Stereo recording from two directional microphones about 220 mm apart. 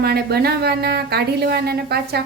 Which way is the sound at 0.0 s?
45° right (ahead or behind).